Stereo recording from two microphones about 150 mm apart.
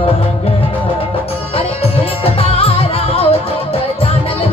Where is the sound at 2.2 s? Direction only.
40° left (ahead or behind).